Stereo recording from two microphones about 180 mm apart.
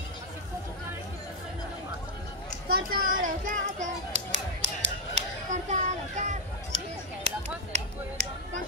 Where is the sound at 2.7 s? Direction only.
55° right (ahead or behind).